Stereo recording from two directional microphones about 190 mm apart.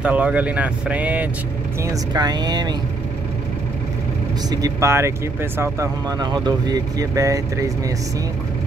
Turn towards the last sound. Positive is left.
turn(degrees=-15)  # may be behind; listen again after turning